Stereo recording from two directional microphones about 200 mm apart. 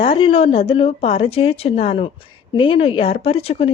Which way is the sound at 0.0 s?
25° left (ahead or behind).